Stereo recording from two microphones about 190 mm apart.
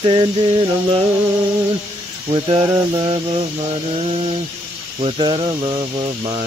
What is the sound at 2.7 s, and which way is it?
Speech, 20° right (ahead or behind).